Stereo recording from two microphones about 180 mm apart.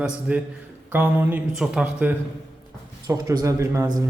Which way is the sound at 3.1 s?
20° right (ahead or behind).